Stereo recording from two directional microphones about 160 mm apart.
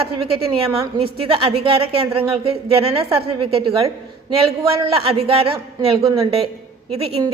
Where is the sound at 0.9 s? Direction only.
35° right (ahead or behind).